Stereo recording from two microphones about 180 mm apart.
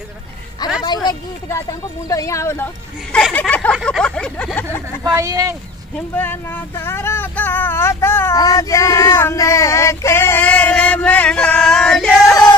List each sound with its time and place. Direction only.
0.8 s speech: 20° left (ahead or behind)
3.7 s a sound: centre (ahead or behind)
5.0 s speech: 20° right (ahead or behind)
5.9 s speech: 10° left (ahead or behind)
12.3 s music: 20° left (ahead or behind)